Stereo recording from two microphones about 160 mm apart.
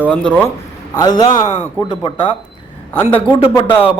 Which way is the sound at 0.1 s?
10° left (ahead or behind).